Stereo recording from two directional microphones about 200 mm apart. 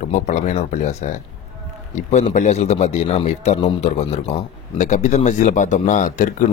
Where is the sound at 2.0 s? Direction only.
35° left (ahead or behind).